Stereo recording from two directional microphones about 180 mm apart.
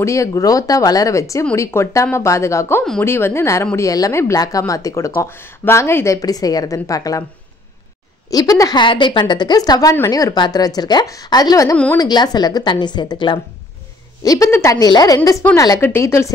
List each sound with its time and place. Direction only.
0.0 s a woman's voice: 15° left (ahead or behind)
2.8 s speech: centre (ahead or behind)
3.1 s speech: 15° left (ahead or behind)
8.3 s a woman's voice: 20° left (ahead or behind)
11.7 s speech: 5° left (ahead or behind)
12.0 s a woman's voice: 20° left (ahead or behind)